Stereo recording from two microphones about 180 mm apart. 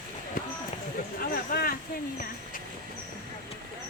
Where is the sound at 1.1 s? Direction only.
55° left (ahead or behind).